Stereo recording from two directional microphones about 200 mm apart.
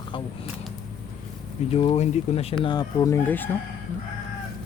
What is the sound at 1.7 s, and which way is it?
Speech, 30° left (ahead or behind).